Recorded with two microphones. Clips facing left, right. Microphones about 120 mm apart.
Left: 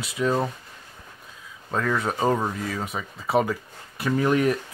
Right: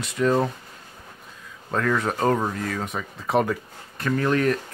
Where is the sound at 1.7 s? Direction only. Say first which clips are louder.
Right 1 dB; 5° left (ahead or behind).